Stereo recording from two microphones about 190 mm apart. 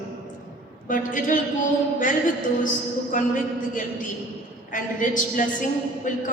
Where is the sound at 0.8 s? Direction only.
45° left (ahead or behind).